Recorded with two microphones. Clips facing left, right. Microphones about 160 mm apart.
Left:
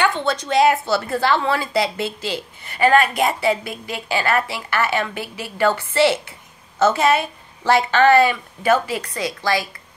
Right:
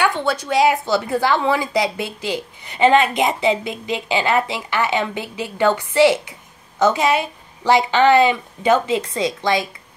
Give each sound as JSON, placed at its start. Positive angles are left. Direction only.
{"t": 0.0, "sound": "speech", "side_deg": -10}